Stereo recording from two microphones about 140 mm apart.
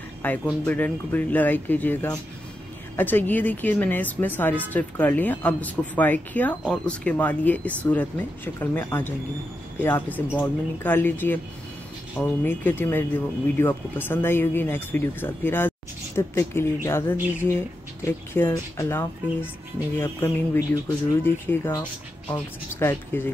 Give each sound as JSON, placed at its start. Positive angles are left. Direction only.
{"t": 0.2, "sound": "speech", "side_deg": 10}